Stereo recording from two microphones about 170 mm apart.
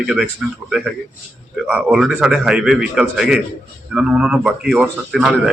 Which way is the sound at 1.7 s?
5° right (ahead or behind).